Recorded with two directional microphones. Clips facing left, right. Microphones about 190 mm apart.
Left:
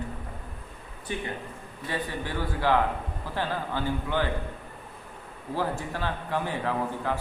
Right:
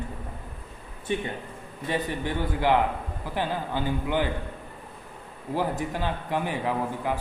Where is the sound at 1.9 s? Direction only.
20° right (ahead or behind).